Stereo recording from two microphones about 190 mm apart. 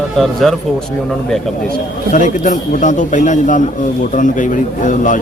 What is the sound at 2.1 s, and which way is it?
A man's voice, 40° left (ahead or behind).